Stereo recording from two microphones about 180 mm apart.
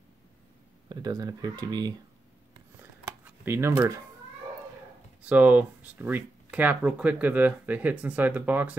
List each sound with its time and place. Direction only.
0.8 s speech: 20° right (ahead or behind)
2.8 s a sound: 15° right (ahead or behind)
5.2 s speech: 10° right (ahead or behind)